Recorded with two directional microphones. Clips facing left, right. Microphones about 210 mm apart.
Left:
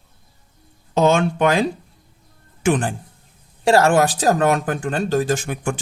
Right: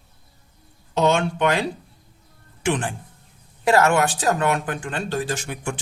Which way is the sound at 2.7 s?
45° left (ahead or behind).